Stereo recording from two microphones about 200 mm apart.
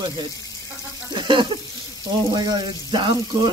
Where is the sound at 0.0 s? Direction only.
20° right (ahead or behind).